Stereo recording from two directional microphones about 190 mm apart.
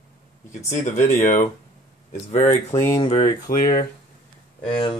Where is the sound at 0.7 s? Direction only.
40° left (ahead or behind).